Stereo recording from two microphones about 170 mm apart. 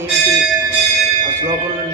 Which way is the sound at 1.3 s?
15° right (ahead or behind).